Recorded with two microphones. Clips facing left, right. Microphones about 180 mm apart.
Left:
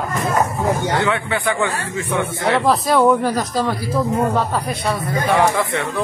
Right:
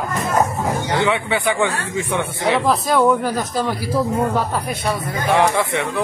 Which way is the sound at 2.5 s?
Centre (ahead or behind).